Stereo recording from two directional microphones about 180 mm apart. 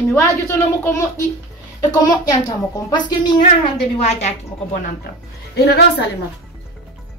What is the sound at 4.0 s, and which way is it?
Speech, 40° left (ahead or behind).